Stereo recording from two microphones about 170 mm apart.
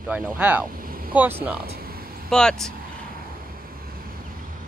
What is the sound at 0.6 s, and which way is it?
Vehicle, 55° right (ahead or behind).